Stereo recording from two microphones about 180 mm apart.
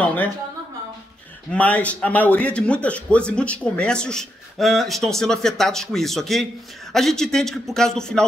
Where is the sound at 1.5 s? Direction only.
10° left (ahead or behind).